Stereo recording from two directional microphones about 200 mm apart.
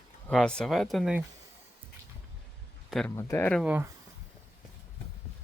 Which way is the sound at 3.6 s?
10° right (ahead or behind).